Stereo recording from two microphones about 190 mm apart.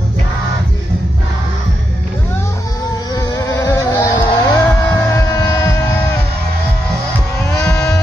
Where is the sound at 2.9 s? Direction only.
20° left (ahead or behind).